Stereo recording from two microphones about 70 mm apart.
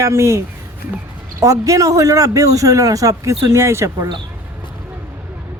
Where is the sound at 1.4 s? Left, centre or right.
Right.